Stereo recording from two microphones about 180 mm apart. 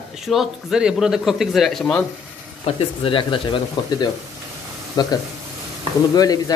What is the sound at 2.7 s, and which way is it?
Speech, 30° left (ahead or behind).